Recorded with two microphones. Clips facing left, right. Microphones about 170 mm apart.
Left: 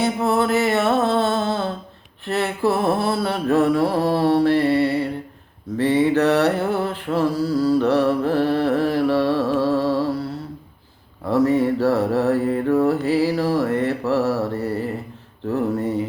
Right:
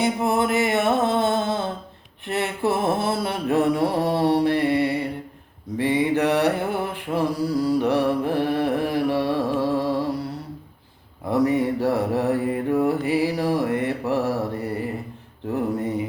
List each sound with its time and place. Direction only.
0.0 s music: 15° right (ahead or behind)
2.2 s mantra: 20° right (ahead or behind)
11.3 s mantra: 15° right (ahead or behind)
15.4 s a sound: 15° right (ahead or behind)